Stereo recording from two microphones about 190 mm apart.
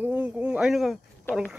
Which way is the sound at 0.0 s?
5° right (ahead or behind).